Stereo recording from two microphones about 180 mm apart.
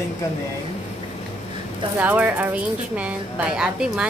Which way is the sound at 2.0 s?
10° right (ahead or behind).